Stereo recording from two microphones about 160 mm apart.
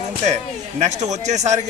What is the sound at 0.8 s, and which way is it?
Speech, 45° right (ahead or behind).